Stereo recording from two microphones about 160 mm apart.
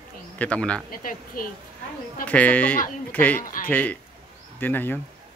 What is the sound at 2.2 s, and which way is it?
Speech, 10° left (ahead or behind).